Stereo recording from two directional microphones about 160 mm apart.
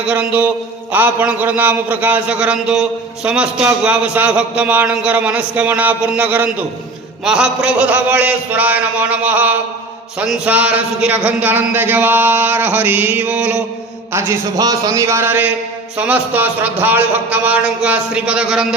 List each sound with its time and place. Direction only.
0.0 s speech: 5° right (ahead or behind)